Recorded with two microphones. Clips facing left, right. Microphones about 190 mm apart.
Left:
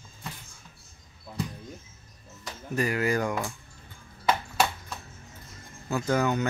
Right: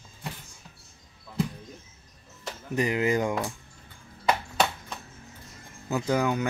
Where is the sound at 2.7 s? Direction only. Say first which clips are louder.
Right 1 dB; 20° right (ahead or behind).